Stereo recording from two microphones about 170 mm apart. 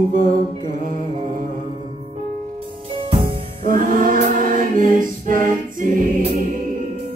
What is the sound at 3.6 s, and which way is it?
Choir, 55° right (ahead or behind).